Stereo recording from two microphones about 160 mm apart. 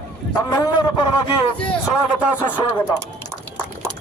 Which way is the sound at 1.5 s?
5° left (ahead or behind).